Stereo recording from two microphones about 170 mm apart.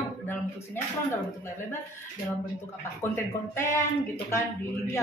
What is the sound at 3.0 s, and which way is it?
Speech, 15° left (ahead or behind).